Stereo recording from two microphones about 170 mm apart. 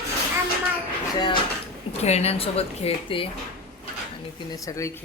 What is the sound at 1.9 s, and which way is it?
A woman's voice, 40° left (ahead or behind).